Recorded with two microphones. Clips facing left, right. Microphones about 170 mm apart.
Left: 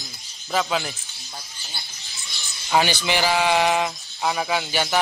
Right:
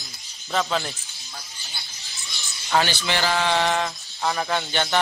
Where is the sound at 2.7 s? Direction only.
15° left (ahead or behind).